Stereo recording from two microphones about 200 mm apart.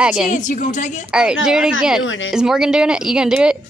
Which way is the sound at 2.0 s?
75° left (ahead or behind).